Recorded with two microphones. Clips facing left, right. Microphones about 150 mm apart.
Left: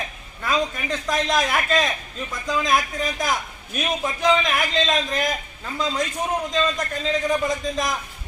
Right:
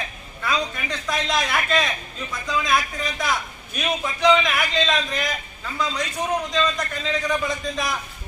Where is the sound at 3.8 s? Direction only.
45° left (ahead or behind).